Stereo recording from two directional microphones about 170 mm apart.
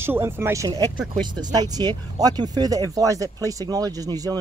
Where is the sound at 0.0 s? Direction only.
15° right (ahead or behind).